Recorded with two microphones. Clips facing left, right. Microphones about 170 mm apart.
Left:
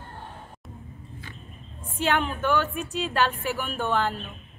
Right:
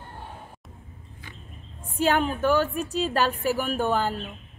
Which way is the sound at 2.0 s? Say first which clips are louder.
Right 3 dB; 40° right (ahead or behind).